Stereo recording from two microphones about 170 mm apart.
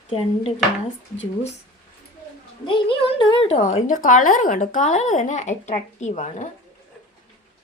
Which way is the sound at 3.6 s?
45° left (ahead or behind).